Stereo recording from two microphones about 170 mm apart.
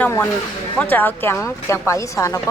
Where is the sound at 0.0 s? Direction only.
15° left (ahead or behind).